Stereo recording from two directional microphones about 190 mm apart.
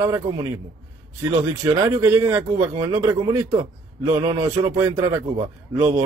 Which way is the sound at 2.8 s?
25° right (ahead or behind).